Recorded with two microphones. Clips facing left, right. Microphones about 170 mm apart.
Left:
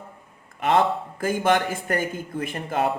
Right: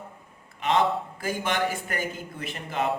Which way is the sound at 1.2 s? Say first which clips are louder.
Left 7 dB; 50° left (ahead or behind).